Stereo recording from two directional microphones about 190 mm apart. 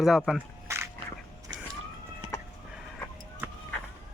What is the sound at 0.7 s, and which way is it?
Crushing, 15° right (ahead or behind).